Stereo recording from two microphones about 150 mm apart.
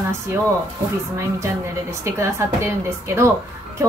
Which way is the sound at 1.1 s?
20° right (ahead or behind).